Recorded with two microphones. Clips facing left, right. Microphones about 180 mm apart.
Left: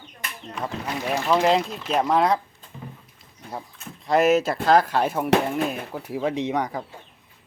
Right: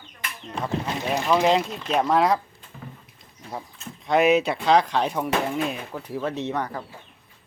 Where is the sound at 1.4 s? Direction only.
Centre (ahead or behind).